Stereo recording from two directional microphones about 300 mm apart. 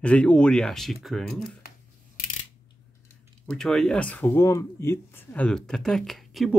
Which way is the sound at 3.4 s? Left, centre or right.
Centre.